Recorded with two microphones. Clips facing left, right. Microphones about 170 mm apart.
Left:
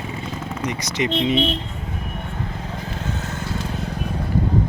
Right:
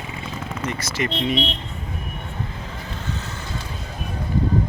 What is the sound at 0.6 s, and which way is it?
Speech, 20° left (ahead or behind).